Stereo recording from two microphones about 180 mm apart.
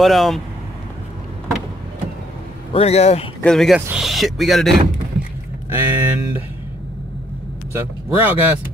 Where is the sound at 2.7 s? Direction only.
35° left (ahead or behind).